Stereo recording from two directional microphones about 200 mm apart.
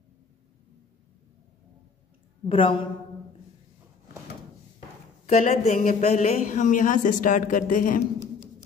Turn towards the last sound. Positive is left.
turn(degrees=45)  # may be behind; listen again after turning